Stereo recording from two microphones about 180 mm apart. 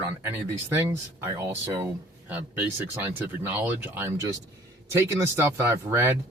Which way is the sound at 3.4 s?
10° right (ahead or behind).